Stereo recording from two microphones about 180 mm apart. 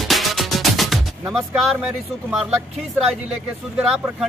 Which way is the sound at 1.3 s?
Centre (ahead or behind).